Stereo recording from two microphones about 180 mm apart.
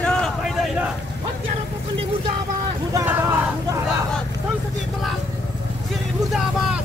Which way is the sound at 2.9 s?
15° right (ahead or behind).